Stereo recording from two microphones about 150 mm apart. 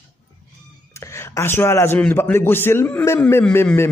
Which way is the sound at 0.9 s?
20° left (ahead or behind).